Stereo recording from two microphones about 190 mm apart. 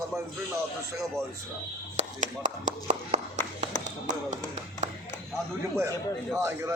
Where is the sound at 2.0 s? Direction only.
40° right (ahead or behind).